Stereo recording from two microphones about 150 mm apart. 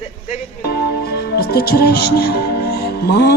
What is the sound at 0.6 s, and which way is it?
Music, 90° left.